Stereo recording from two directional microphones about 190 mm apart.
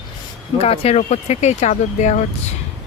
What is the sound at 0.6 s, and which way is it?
Speech, 30° left (ahead or behind).